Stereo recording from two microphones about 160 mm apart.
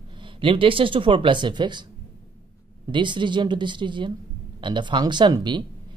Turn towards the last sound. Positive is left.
turn(degrees=-30)  # may be behind; listen again after turning